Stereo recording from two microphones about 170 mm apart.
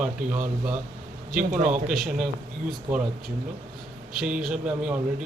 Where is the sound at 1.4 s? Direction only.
50° right (ahead or behind).